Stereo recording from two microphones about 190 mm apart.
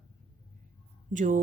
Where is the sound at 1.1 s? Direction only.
45° right (ahead or behind).